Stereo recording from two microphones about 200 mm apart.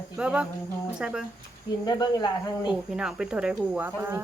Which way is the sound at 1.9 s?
20° left (ahead or behind).